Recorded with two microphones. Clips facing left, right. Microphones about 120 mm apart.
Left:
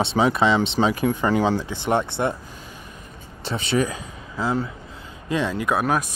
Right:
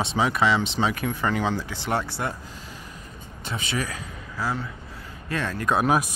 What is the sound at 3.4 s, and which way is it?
Speech, 25° left (ahead or behind).